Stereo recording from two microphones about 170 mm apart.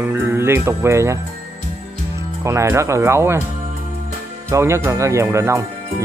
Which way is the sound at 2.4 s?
15° right (ahead or behind).